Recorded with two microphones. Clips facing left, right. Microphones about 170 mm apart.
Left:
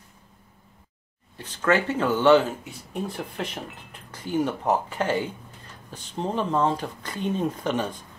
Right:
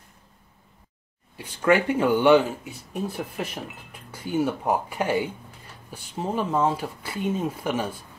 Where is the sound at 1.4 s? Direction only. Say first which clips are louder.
Right 2 dB; 10° right (ahead or behind).